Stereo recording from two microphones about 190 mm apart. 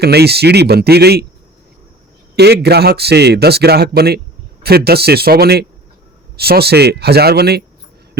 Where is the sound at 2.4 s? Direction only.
60° right (ahead or behind).